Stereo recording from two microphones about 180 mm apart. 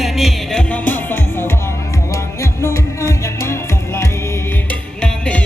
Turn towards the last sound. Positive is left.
turn(degrees=5)  # may be behind; listen again after turning